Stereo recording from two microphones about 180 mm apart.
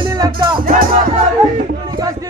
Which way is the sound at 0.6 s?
50° right (ahead or behind).